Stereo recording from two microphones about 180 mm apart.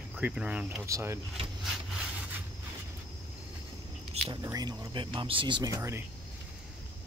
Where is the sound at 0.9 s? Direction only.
15° right (ahead or behind).